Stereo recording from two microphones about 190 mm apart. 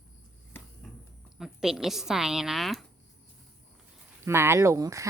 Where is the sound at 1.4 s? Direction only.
Centre (ahead or behind).